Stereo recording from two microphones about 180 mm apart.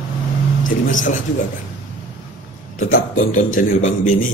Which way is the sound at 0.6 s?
45° left (ahead or behind).